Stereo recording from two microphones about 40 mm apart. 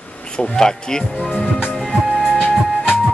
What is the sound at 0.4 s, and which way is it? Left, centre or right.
Speech, centre.